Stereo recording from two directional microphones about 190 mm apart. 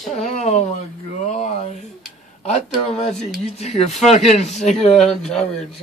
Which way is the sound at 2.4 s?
35° left (ahead or behind).